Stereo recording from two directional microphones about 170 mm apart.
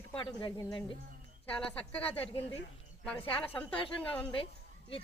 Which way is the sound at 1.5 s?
5° left (ahead or behind).